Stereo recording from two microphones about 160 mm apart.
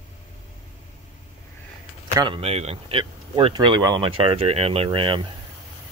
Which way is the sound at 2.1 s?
30° right (ahead or behind).